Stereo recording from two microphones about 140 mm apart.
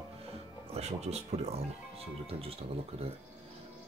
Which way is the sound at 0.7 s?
50° right (ahead or behind).